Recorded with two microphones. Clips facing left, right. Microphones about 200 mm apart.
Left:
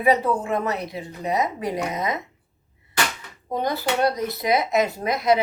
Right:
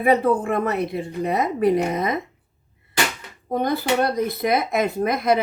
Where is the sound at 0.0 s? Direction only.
55° right (ahead or behind).